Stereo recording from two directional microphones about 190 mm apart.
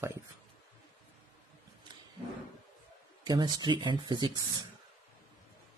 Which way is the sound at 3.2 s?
20° right (ahead or behind).